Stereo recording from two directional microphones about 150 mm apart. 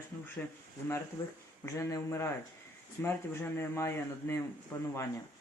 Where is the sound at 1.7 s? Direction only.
20° left (ahead or behind).